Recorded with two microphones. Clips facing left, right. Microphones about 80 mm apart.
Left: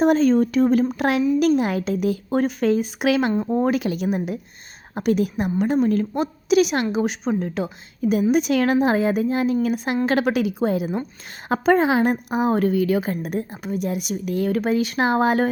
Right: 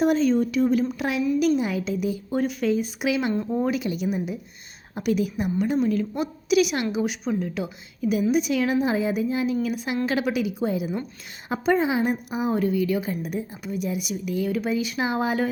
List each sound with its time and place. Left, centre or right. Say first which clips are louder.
0.0 s a woman's voice: left 4 dB; left
2.5 s a woman's voice: left 4 dB; left